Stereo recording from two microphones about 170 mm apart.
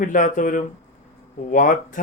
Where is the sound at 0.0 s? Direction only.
50° left (ahead or behind).